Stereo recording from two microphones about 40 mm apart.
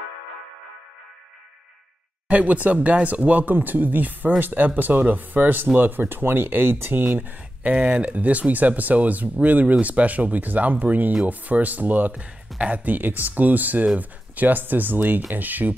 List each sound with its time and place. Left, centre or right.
2.2 s speech: right
7.2 s speech: right
7.7 s speech: right